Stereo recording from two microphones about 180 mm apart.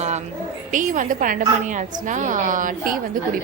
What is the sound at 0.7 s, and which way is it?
A woman's voice, 45° right (ahead or behind).